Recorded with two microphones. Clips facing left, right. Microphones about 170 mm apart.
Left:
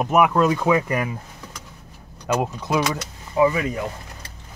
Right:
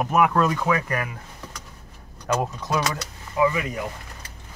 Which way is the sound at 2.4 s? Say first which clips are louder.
Left 3 dB; 15° left (ahead or behind).